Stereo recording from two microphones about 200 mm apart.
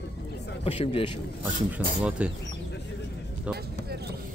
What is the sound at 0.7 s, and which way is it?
Speech, 25° left (ahead or behind).